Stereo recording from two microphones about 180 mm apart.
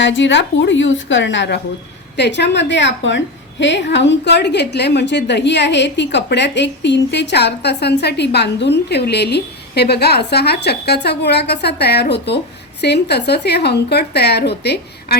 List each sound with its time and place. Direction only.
0.0 s a woman's voice: 90° left; by 15.2 s 65° left (ahead or behind)